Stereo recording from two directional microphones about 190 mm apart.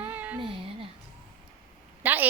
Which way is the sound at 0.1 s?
10° right (ahead or behind).